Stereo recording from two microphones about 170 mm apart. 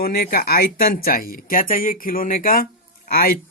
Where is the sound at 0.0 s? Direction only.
60° left (ahead or behind).